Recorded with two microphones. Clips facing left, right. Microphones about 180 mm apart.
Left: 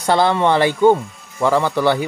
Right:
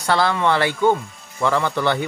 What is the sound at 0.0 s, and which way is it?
Speech, 20° left (ahead or behind).